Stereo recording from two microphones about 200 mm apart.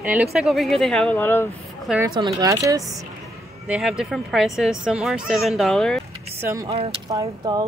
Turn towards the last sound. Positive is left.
turn(degrees=-20)  # may be behind; listen again after turning